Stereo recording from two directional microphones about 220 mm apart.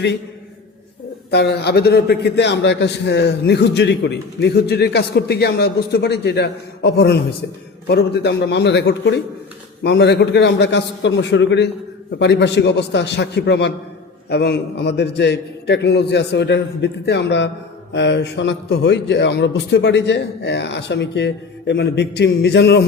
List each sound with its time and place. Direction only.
1.3 s a man's voice: 50° left (ahead or behind)